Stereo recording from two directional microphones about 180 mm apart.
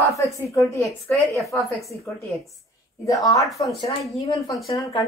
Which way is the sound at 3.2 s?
20° left (ahead or behind).